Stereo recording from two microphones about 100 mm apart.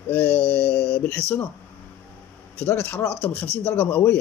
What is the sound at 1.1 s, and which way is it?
Speech, 20° left (ahead or behind).